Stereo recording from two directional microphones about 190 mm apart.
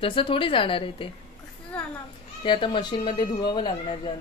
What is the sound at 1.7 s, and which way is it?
Children playing, 5° left (ahead or behind).